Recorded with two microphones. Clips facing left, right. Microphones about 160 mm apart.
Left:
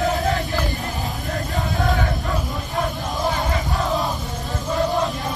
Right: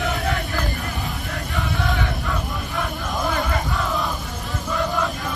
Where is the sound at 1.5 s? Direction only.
40° left (ahead or behind).